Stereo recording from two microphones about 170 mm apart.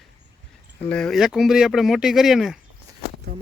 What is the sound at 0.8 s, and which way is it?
Speech, 5° left (ahead or behind).